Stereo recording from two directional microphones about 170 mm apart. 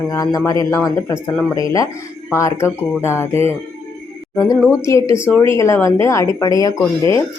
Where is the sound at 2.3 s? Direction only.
15° left (ahead or behind).